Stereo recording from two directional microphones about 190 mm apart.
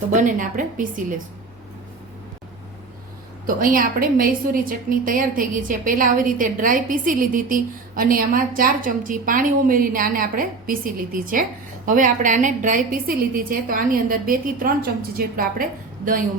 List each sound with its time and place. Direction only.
0.1 s a woman's voice: 45° right (ahead or behind)
3.4 s a woman's voice: 45° right (ahead or behind)